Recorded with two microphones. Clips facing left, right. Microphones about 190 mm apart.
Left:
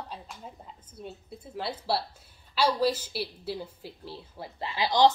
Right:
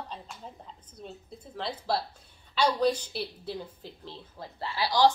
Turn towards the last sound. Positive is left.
turn(degrees=20)  # may be behind; listen again after turning